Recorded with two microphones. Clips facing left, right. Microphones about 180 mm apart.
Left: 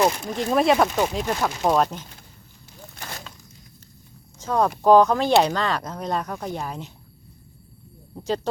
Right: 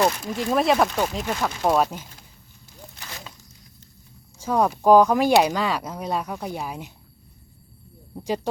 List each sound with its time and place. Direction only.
0.3 s speech: centre (ahead or behind)
2.9 s a sound: 50° left (ahead or behind)
4.4 s speech: 10° right (ahead or behind)